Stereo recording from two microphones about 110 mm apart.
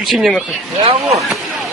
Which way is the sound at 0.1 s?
Centre (ahead or behind).